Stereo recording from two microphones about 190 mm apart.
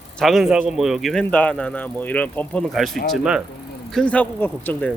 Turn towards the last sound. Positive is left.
turn(degrees=10)  # may be behind; listen again after turning